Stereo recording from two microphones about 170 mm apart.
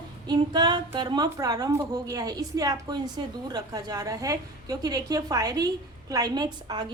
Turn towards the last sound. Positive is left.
turn(degrees=-25)  # may be behind; listen again after turning